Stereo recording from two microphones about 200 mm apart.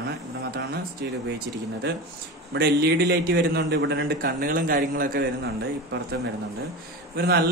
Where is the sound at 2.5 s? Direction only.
55° right (ahead or behind).